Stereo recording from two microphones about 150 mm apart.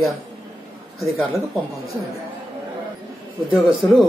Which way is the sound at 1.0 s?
Centre (ahead or behind).